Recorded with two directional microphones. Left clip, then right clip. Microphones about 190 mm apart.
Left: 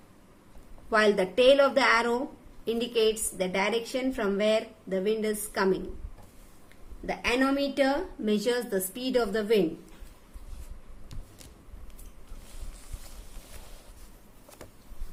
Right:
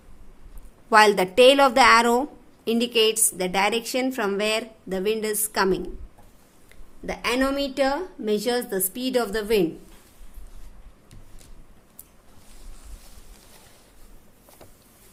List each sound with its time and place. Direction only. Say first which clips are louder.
0.9 s a woman's voice: right 7 dB; 55° right (ahead or behind)
7.0 s a woman's voice: right 3 dB; 45° right (ahead or behind)